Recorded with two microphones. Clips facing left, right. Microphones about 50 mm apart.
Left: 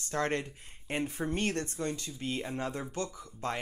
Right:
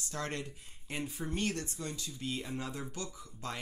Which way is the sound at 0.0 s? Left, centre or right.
Left.